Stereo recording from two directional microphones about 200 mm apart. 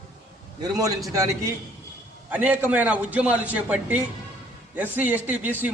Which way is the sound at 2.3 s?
10° right (ahead or behind).